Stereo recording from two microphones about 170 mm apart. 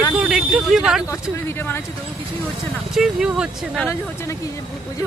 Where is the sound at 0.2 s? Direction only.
5° right (ahead or behind).